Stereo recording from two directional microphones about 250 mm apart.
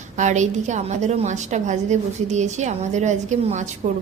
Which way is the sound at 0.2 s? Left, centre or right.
Right.